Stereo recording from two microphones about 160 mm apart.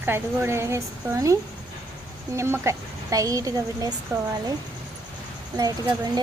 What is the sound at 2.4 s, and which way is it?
A woman's voice, 15° right (ahead or behind).